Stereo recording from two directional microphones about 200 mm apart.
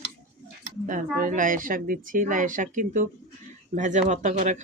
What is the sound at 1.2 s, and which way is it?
Speech, 40° right (ahead or behind).